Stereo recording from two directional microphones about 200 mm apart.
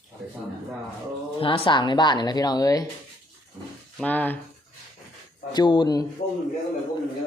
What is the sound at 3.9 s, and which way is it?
Speech, 10° left (ahead or behind).